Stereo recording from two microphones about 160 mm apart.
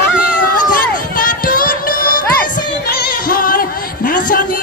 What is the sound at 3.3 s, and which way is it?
Music, 60° left (ahead or behind).